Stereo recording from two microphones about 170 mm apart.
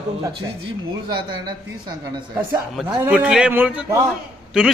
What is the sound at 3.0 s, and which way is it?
Speech, 5° right (ahead or behind).